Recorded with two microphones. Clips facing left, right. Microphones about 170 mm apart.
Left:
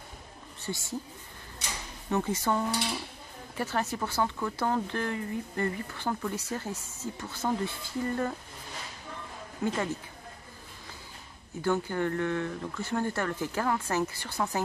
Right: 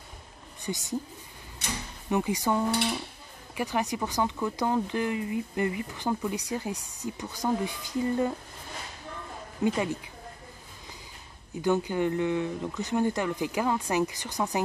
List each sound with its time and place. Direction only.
0.6 s a woman's voice: 20° right (ahead or behind)
2.0 s speech: 15° right (ahead or behind)
9.6 s speech: 20° right (ahead or behind)
11.6 s speech: 15° right (ahead or behind)